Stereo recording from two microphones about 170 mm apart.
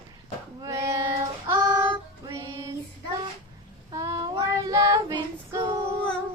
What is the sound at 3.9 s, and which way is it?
Female singing, 20° right (ahead or behind).